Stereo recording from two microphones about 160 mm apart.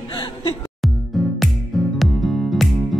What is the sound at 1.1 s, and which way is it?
Music, centre (ahead or behind).